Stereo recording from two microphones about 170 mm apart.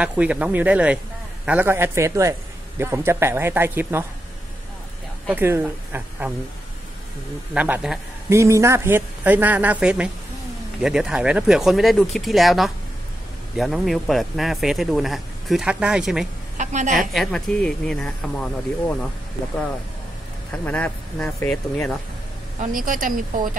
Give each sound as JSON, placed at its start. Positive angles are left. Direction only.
{"t": 0.0, "sound": "a man's voice", "side_deg": -5}
{"t": 5.3, "sound": "a man's voice", "side_deg": -10}
{"t": 7.5, "sound": "a man's voice", "side_deg": -10}
{"t": 8.3, "sound": "a man's voice", "side_deg": -15}
{"t": 16.5, "sound": "a woman's voice", "side_deg": -45}
{"t": 17.1, "sound": "speech", "side_deg": 0}
{"t": 20.5, "sound": "speech", "side_deg": 10}
{"t": 22.6, "sound": "speech", "side_deg": -55}